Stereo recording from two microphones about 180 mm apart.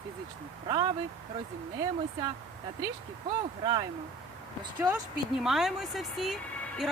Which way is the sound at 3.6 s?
25° right (ahead or behind).